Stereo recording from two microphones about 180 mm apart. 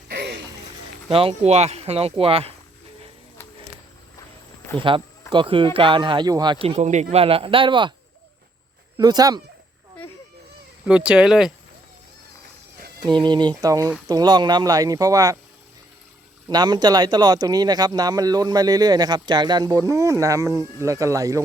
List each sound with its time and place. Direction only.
0.1 s a sound: 70° right (ahead or behind)
1.1 s speech: 30° right (ahead or behind)
4.8 s a man's voice: 25° right (ahead or behind)
9.0 s a man's voice: 20° right (ahead or behind)
10.8 s speech: 5° right (ahead or behind)
13.0 s a man's voice: 25° right (ahead or behind)
16.5 s a man's voice: 25° right (ahead or behind)